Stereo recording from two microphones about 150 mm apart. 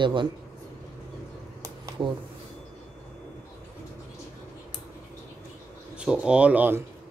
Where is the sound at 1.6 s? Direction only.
30° right (ahead or behind).